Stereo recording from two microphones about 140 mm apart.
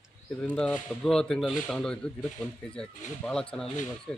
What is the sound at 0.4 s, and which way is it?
A man's voice, 5° left (ahead or behind).